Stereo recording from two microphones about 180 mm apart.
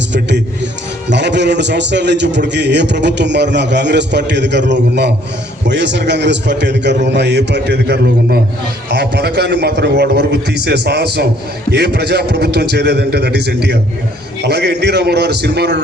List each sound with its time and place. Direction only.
0.1 s a man's voice: 75° right (ahead or behind)